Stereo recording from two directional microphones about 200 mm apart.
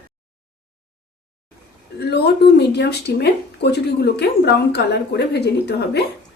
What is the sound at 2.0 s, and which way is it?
Speech, 55° left (ahead or behind).